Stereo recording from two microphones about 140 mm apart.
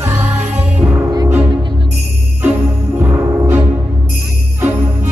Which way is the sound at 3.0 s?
15° right (ahead or behind).